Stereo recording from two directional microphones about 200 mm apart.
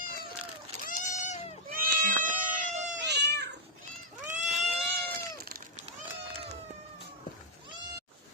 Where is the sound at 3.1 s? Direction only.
55° right (ahead or behind).